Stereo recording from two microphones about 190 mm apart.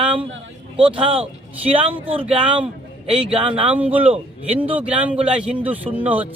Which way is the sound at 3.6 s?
10° right (ahead or behind).